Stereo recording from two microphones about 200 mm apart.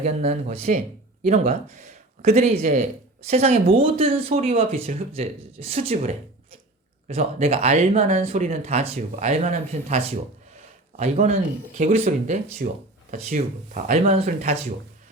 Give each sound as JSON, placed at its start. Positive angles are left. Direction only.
{"t": 0.0, "sound": "speech", "side_deg": -35}